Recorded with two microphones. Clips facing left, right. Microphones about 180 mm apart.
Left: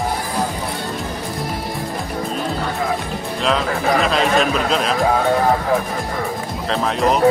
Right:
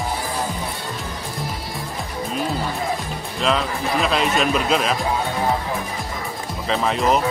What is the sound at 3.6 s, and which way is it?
Speech, 65° left (ahead or behind).